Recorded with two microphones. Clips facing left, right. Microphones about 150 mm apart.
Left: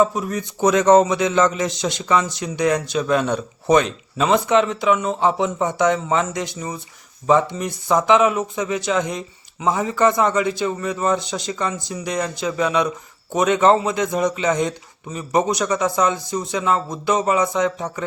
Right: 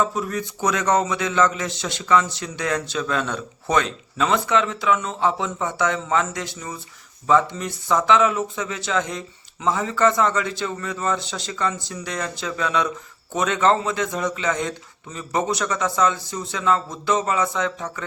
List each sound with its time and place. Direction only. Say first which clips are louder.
0.0 s speech: left 4 dB; 15° left (ahead or behind)